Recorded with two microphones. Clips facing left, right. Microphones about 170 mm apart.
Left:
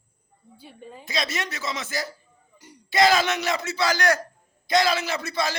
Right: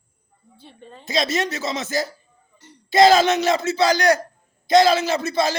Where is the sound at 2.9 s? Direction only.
25° right (ahead or behind).